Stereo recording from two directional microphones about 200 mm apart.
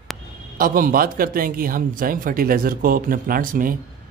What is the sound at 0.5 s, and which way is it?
A man's voice, 45° right (ahead or behind).